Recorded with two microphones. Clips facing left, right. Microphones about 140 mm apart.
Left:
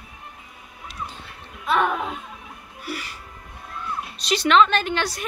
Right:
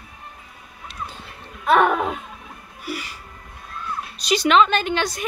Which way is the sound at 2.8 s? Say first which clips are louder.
Right 2 dB; centre (ahead or behind).